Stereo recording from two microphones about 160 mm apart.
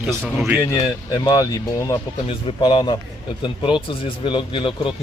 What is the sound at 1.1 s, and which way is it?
Speech, 25° left (ahead or behind).